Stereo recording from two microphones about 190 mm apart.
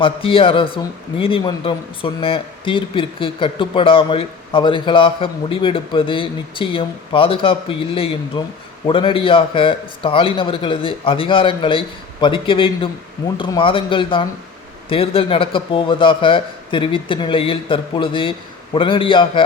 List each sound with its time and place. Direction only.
0.0 s speech: 30° left (ahead or behind)